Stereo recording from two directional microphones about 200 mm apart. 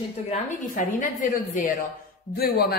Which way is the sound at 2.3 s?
50° left (ahead or behind).